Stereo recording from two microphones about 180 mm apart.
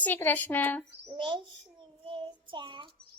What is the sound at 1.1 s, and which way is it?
Speech, 25° right (ahead or behind).